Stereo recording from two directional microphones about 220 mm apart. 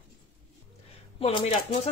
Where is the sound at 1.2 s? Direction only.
30° left (ahead or behind).